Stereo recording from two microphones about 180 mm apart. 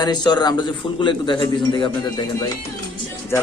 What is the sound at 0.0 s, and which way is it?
A man's voice, 25° left (ahead or behind).